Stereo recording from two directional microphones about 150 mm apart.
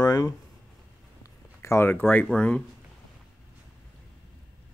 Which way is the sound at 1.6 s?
15° left (ahead or behind).